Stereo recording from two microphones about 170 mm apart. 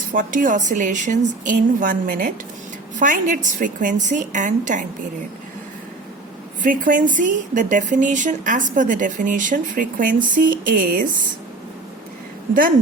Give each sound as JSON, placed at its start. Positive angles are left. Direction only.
{"t": 0.1, "sound": "a woman's voice", "side_deg": -50}
{"t": 6.6, "sound": "a woman's voice", "side_deg": -50}